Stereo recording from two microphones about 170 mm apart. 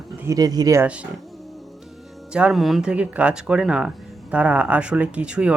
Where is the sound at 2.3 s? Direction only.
5° right (ahead or behind).